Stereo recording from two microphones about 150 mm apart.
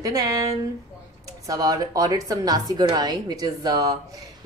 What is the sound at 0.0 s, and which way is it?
Speech, 25° right (ahead or behind).